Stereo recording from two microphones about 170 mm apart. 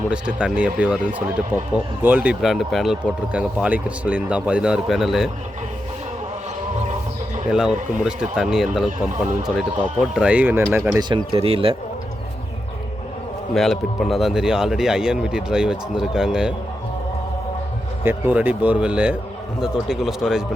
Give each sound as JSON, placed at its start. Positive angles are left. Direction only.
{"t": 0.1, "sound": "speech", "side_deg": -5}
{"t": 7.5, "sound": "speech", "side_deg": -5}
{"t": 11.1, "sound": "speech", "side_deg": -35}
{"t": 13.5, "sound": "speech", "side_deg": 0}
{"t": 18.0, "sound": "speech", "side_deg": -10}